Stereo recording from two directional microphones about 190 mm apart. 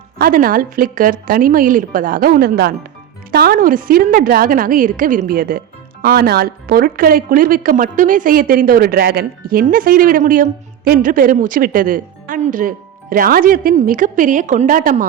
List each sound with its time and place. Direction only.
0.2 s a woman's voice: 45° right (ahead or behind)